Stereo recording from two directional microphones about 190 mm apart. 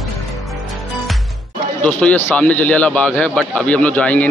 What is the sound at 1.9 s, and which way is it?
Speech, 5° left (ahead or behind).